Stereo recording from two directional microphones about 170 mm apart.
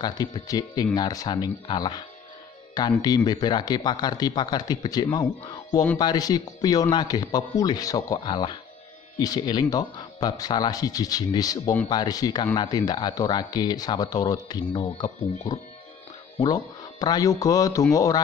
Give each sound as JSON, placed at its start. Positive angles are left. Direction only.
{"t": 0.0, "sound": "speech", "side_deg": 25}